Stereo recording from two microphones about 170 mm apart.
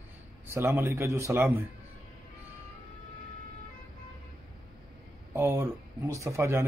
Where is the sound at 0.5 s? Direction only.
15° right (ahead or behind).